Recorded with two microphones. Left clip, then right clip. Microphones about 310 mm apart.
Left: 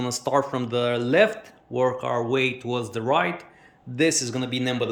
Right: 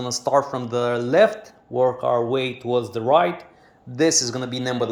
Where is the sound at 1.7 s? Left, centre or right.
Centre.